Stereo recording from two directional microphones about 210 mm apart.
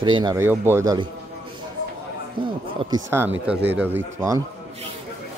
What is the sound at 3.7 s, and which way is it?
Speech, 10° right (ahead or behind).